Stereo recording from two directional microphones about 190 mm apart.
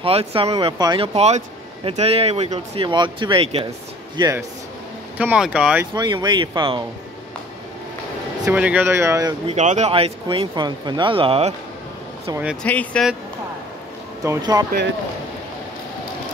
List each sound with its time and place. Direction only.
0.0 s speech: 30° right (ahead or behind)
4.2 s speech: 15° right (ahead or behind)
5.9 s speech: 20° right (ahead or behind)
8.5 s speech: 5° right (ahead or behind)
9.5 s speech: 35° right (ahead or behind)
12.6 s speech: 5° left (ahead or behind)
14.2 s speech: 15° right (ahead or behind)